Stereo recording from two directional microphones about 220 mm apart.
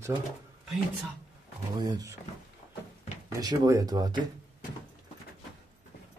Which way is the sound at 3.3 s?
15° right (ahead or behind).